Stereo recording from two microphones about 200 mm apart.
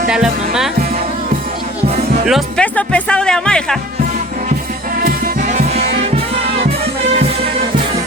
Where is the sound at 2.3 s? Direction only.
5° left (ahead or behind).